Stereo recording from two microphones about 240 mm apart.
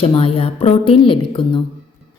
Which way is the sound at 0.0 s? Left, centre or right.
Left.